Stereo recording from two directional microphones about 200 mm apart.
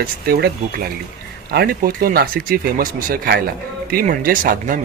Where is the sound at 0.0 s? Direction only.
50° right (ahead or behind).